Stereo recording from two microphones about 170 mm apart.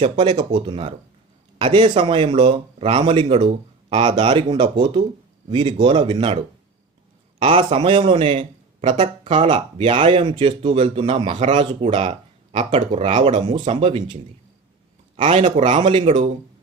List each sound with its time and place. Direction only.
0.0 s speech: 35° right (ahead or behind)
7.4 s speech: 30° right (ahead or behind)
15.2 s speech: 35° right (ahead or behind)